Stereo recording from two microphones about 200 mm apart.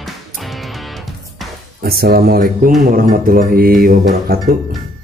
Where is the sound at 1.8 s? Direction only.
50° right (ahead or behind).